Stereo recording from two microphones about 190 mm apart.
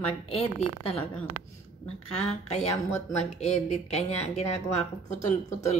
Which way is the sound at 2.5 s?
35° left (ahead or behind).